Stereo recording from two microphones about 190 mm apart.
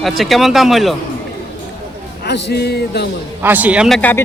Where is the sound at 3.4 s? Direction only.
10° right (ahead or behind).